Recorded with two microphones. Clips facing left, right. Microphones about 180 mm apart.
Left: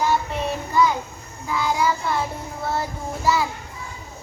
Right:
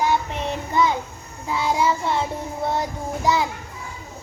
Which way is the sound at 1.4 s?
25° right (ahead or behind).